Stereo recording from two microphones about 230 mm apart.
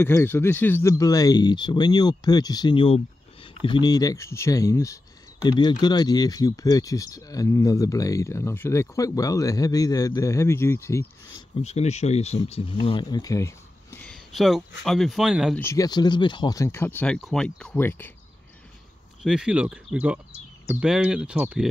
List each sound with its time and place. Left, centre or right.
0.0 s speech: centre
11.6 s speech: left; by 15.6 s centre
15.6 s speech: centre
19.2 s speech: centre